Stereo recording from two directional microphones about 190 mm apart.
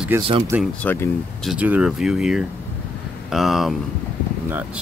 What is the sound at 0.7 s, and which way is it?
Speech, 10° left (ahead or behind).